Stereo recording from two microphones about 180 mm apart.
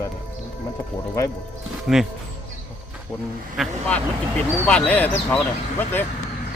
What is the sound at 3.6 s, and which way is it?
Speech, centre (ahead or behind).